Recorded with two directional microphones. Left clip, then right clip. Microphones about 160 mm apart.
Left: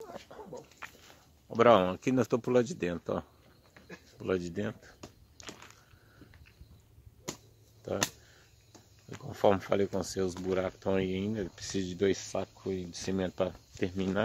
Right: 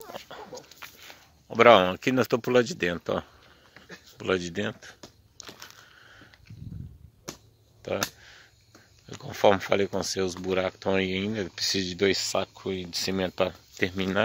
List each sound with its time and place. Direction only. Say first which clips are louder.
0.0 s dog: right 5 dB; 15° right (ahead or behind)
0.6 s dog: right 2 dB; 70° right (ahead or behind)
1.6 s speech: right 6 dB; 10° right (ahead or behind)
5.4 s a sound: right 3 dB; 65° right (ahead or behind)
7.8 s a sound: right 4 dB; 10° right (ahead or behind)
9.2 s speech: right 6 dB; 15° right (ahead or behind)